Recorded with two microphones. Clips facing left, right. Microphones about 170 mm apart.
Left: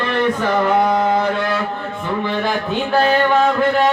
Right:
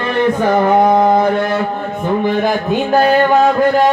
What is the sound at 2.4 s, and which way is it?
Speech, 45° right (ahead or behind).